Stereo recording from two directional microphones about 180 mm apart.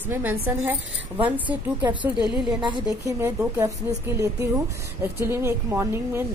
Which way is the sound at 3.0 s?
15° right (ahead or behind).